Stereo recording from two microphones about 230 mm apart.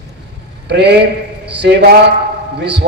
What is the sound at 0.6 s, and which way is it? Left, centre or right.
A man's voice, right.